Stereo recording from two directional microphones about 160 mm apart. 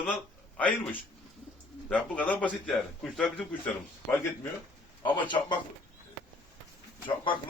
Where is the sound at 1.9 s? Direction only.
10° left (ahead or behind).